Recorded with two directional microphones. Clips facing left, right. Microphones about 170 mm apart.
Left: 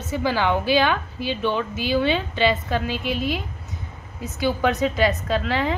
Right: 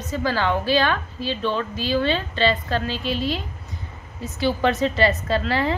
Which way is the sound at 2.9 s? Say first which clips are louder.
Even; 55° left (ahead or behind).